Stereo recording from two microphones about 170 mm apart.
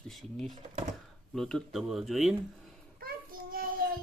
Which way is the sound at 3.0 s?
60° right (ahead or behind).